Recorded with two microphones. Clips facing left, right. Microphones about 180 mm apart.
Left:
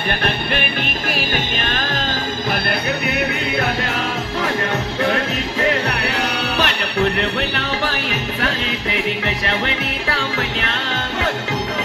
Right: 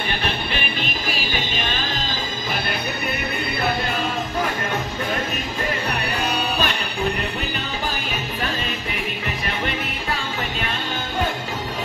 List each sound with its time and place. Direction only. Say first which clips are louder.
3.1 s music: left 5 dB; 80° left
5.0 s music: left 6 dB; 80° left
10.0 s music: left 6 dB; 80° left